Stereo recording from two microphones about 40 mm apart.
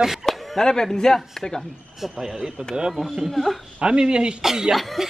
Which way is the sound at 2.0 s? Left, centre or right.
Centre.